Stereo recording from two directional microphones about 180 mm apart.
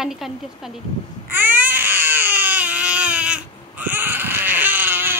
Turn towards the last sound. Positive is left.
turn(degrees=-10)  # may be behind; listen again after turning